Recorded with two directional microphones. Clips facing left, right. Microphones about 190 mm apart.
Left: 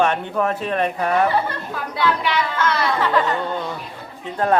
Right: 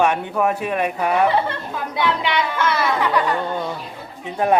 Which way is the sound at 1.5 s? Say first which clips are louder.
Right 1 dB; 20° right (ahead or behind).